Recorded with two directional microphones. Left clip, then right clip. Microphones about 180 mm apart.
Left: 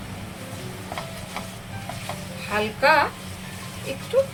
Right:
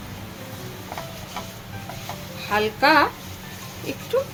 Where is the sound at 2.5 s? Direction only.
50° right (ahead or behind).